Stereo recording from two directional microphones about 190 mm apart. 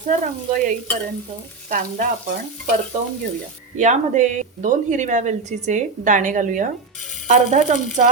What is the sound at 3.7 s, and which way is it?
Speech, 40° right (ahead or behind).